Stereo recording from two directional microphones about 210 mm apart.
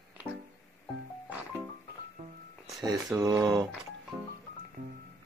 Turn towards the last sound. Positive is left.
turn(degrees=-20)  # may be behind; listen again after turning